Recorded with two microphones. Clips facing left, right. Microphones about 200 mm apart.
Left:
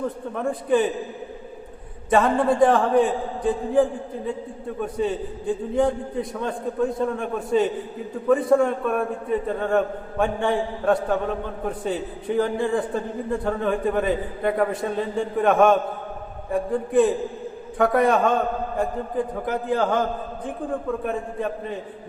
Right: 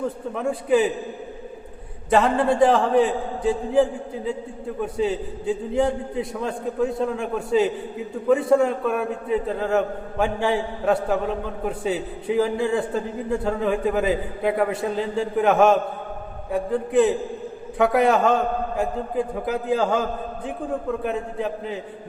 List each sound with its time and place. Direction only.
0.3 s a man's voice: 5° right (ahead or behind)
2.0 s a man's voice: centre (ahead or behind)